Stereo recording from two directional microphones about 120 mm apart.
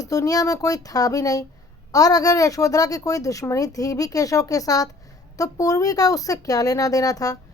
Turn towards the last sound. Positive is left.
turn(degrees=30)  # may be behind; listen again after turning